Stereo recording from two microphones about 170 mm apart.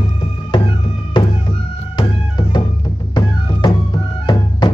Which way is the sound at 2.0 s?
25° left (ahead or behind).